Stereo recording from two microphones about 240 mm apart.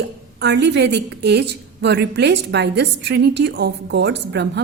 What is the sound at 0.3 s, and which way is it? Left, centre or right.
A woman's voice, right.